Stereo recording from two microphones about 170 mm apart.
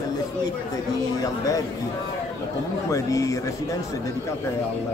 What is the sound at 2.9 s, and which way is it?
Speech, 20° left (ahead or behind).